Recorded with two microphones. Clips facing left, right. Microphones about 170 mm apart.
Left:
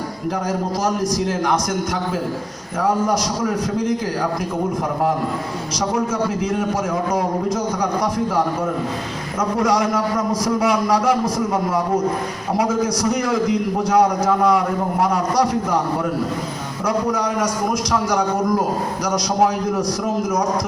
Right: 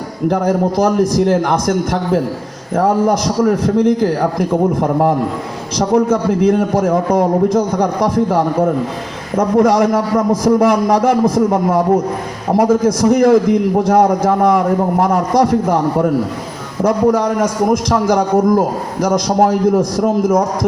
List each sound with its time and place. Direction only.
0.3 s a man's voice: 60° right (ahead or behind)
12.5 s a man's voice: 55° right (ahead or behind)